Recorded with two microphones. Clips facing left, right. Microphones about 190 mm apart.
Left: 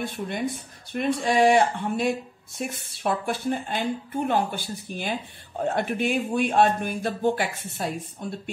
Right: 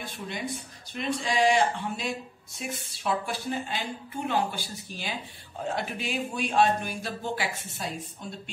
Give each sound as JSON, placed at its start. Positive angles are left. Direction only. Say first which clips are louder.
{"t": 0.0, "sound": "speech", "louder": "left 7 dB", "side_deg": 55}